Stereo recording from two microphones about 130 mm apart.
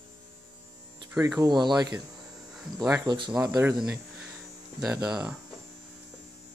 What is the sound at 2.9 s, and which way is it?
Speech, 25° right (ahead or behind).